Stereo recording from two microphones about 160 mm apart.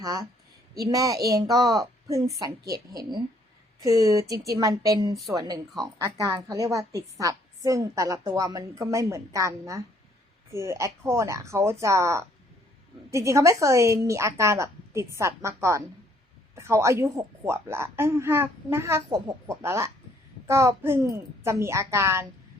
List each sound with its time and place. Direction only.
0.0 s a woman's voice: 20° right (ahead or behind)
3.8 s a woman's voice: 20° right (ahead or behind)